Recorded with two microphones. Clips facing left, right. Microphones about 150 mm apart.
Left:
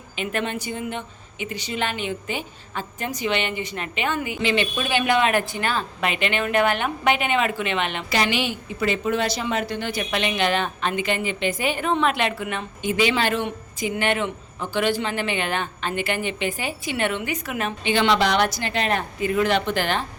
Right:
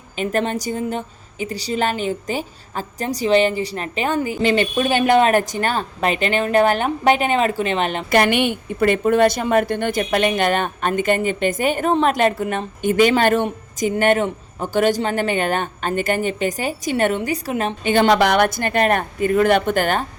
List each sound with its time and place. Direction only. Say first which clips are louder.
0.2 s a woman's voice: right 6 dB; 40° right (ahead or behind)
8.1 s a woman's voice: right 7 dB; 55° right (ahead or behind); by 17.7 s 30° right (ahead or behind)
17.8 s a woman's voice: right 5 dB; 45° right (ahead or behind)